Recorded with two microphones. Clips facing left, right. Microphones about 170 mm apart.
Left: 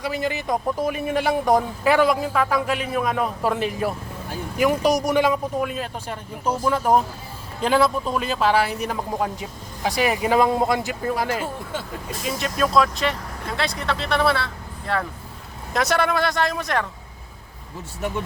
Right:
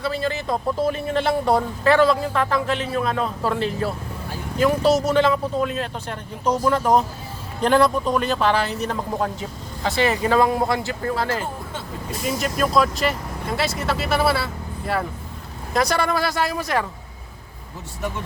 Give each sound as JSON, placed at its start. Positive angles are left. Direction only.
{"t": 0.0, "sound": "a man's voice", "side_deg": 15}
{"t": 11.8, "sound": "speech", "side_deg": 0}